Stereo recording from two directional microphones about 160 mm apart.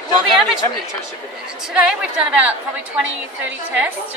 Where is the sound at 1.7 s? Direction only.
5° right (ahead or behind).